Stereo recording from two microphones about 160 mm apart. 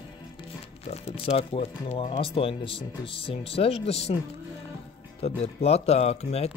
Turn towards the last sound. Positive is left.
turn(degrees=40)  # may be behind; listen again after turning